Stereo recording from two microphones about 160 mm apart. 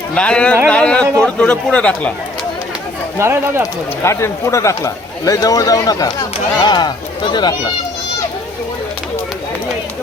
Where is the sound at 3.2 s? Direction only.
15° right (ahead or behind).